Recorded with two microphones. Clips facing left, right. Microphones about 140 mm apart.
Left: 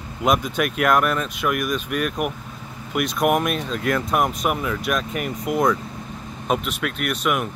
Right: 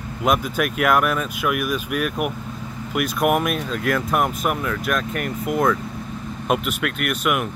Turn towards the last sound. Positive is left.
turn(degrees=-5)  # may be behind; listen again after turning